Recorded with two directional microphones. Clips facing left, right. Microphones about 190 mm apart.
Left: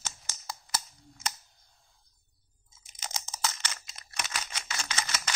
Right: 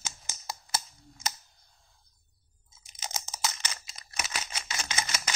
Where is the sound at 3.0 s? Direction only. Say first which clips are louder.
Even; 15° right (ahead or behind).